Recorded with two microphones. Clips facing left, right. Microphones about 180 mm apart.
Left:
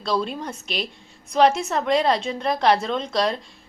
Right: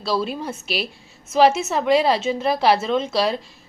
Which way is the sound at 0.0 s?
5° right (ahead or behind).